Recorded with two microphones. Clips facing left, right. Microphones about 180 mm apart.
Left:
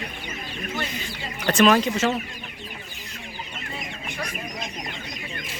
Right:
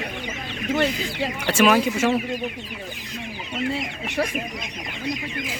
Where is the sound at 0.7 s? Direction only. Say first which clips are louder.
Right 11 dB; 70° right (ahead or behind).